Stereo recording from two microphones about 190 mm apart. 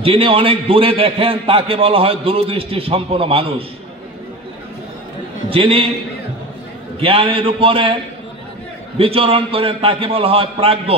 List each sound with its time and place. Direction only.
0.0 s a man's voice: 30° right (ahead or behind)
5.5 s a man's voice: 30° right (ahead or behind)
7.0 s a man's voice: 30° right (ahead or behind)